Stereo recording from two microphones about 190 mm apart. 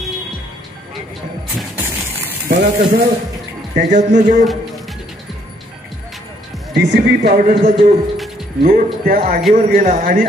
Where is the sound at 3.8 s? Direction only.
40° right (ahead or behind).